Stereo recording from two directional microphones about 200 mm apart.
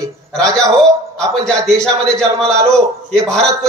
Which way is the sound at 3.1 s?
5° left (ahead or behind).